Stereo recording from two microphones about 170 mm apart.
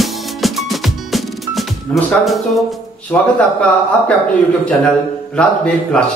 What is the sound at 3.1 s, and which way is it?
Speech, 10° left (ahead or behind).